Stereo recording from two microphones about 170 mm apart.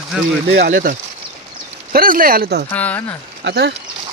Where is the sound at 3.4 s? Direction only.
75° right (ahead or behind).